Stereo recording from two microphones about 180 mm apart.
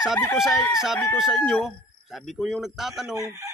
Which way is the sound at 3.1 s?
15° right (ahead or behind).